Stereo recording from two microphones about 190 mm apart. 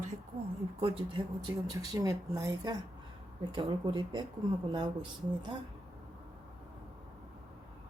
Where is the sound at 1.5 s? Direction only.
15° right (ahead or behind).